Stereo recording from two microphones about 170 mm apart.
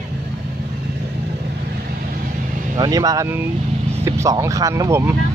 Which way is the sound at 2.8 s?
20° right (ahead or behind).